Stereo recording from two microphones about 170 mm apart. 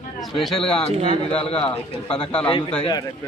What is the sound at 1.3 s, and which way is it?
A man's voice, 35° left (ahead or behind).